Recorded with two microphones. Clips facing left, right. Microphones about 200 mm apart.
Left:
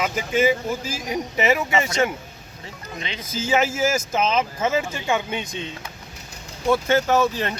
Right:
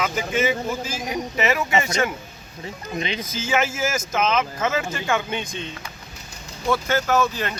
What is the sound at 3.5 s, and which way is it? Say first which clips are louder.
Speech: left 3 dB; 35° left (ahead or behind).